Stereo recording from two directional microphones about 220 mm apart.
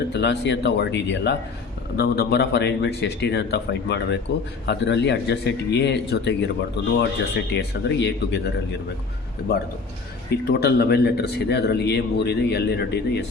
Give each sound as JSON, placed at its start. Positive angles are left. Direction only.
{"t": 0.2, "sound": "speech", "side_deg": 55}
{"t": 10.2, "sound": "speech", "side_deg": 45}